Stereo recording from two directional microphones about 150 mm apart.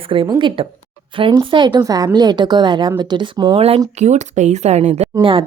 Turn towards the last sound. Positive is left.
turn(degrees=-35)  # may be behind; listen again after turning